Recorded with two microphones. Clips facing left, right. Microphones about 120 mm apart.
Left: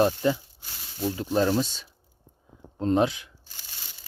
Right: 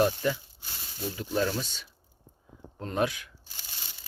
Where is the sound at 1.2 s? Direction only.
35° left (ahead or behind).